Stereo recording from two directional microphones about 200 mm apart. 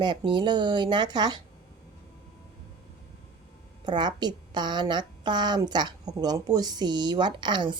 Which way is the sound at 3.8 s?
20° right (ahead or behind).